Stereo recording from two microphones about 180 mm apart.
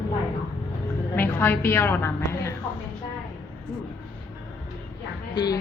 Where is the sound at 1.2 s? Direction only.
10° left (ahead or behind).